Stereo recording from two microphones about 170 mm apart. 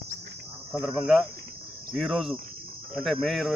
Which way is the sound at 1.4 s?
60° right (ahead or behind).